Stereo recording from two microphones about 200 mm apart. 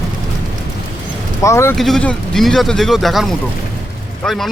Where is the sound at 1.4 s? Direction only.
15° left (ahead or behind).